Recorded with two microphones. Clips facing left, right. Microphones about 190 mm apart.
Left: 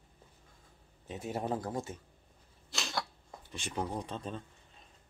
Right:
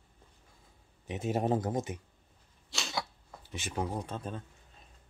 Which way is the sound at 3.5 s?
5° right (ahead or behind).